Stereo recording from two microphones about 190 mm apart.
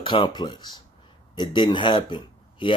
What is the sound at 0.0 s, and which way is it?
Speech, 25° left (ahead or behind).